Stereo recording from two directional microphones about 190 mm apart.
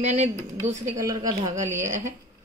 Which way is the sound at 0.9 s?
15° right (ahead or behind).